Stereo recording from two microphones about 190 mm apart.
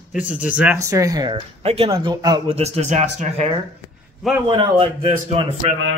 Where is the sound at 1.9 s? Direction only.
20° right (ahead or behind); by 3.5 s 35° right (ahead or behind).